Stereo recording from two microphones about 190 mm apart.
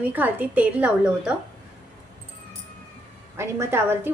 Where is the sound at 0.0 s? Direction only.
10° right (ahead or behind).